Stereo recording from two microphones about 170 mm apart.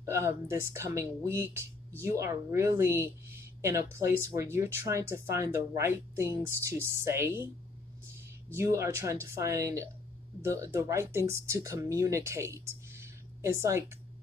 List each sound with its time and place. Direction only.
0.0 s speech: 15° right (ahead or behind)
8.5 s speech: 15° right (ahead or behind)